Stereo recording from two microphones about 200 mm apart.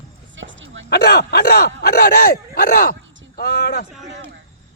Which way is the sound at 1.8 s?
50° left (ahead or behind).